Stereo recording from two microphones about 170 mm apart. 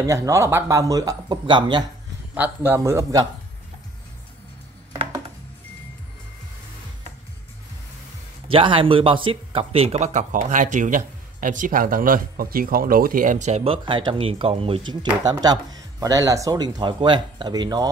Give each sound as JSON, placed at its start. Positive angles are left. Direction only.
{"t": 0.0, "sound": "speech", "side_deg": -20}
{"t": 2.3, "sound": "a man's voice", "side_deg": -10}
{"t": 8.5, "sound": "speech", "side_deg": -30}